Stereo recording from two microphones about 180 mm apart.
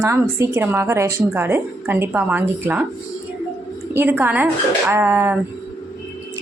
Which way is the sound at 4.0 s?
10° right (ahead or behind).